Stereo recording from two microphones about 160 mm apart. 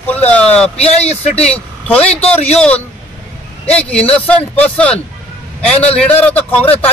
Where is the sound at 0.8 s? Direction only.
40° left (ahead or behind).